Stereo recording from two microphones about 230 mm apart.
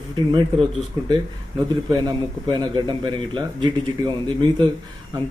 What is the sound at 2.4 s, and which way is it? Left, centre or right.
A man's voice, centre.